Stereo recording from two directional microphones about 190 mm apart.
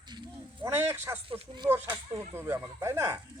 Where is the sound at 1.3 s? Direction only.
25° right (ahead or behind).